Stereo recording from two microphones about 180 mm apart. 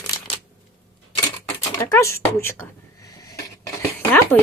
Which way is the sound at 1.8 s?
15° left (ahead or behind).